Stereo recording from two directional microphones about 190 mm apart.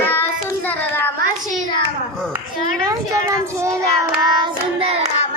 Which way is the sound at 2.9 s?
15° right (ahead or behind).